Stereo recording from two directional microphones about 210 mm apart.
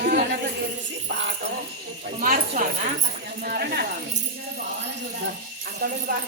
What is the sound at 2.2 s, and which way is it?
Speech, 40° right (ahead or behind).